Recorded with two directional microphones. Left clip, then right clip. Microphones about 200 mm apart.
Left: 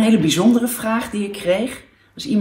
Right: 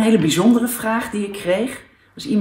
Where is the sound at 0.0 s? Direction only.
Centre (ahead or behind).